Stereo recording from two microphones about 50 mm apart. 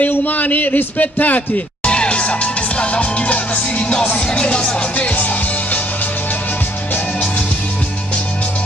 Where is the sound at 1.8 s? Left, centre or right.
Left.